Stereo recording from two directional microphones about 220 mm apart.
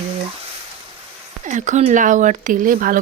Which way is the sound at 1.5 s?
35° right (ahead or behind).